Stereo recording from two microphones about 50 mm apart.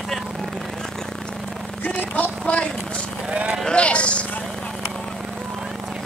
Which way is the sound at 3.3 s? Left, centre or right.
Right.